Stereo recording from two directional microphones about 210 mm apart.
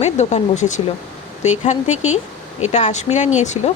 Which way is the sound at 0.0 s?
30° left (ahead or behind).